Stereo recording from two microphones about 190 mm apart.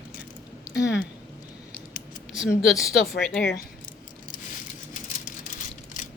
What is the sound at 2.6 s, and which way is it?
Speech, centre (ahead or behind).